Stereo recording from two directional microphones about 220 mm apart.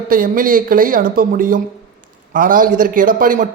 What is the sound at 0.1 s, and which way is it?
A man's voice, 40° right (ahead or behind).